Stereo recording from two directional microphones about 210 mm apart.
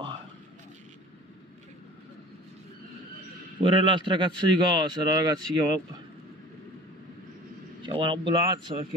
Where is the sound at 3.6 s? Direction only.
25° right (ahead or behind).